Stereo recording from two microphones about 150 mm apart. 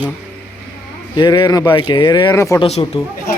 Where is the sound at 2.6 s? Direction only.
40° left (ahead or behind).